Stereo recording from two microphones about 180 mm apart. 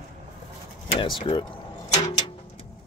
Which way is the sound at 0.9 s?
30° left (ahead or behind).